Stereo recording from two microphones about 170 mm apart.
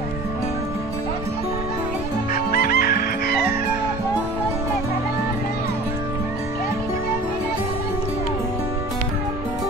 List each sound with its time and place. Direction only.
2.3 s chicken: 60° left (ahead or behind)